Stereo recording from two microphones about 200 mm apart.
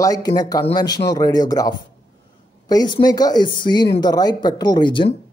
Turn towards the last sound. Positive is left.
turn(degrees=25)  # may be behind; listen again after turning